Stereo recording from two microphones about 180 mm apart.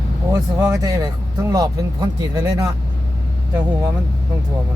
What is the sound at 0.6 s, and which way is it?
Speech, 15° right (ahead or behind).